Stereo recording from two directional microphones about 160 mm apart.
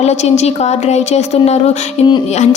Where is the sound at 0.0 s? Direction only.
45° left (ahead or behind).